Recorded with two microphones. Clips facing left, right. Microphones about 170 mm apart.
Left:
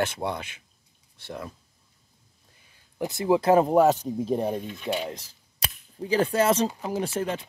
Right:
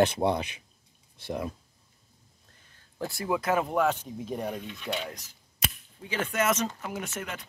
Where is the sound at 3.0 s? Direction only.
20° left (ahead or behind).